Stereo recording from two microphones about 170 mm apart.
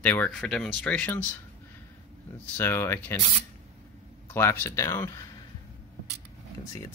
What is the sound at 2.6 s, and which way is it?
Speech, 10° left (ahead or behind).